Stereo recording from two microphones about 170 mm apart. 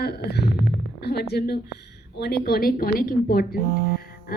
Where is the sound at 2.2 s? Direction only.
65° left (ahead or behind).